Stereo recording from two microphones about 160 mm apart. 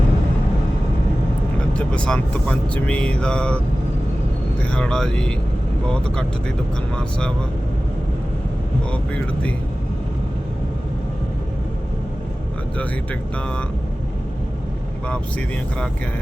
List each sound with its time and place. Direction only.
1.7 s speech: 5° left (ahead or behind)
4.7 s speech: 5° left (ahead or behind)
6.9 s speech: 5° left (ahead or behind)
15.0 s speech: 5° left (ahead or behind)